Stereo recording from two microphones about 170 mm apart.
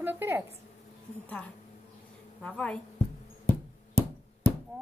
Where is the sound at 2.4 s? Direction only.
5° left (ahead or behind).